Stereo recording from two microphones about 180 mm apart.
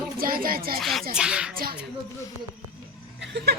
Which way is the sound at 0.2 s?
55° right (ahead or behind).